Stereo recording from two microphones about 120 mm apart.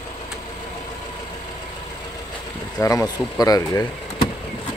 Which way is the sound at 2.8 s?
30° left (ahead or behind).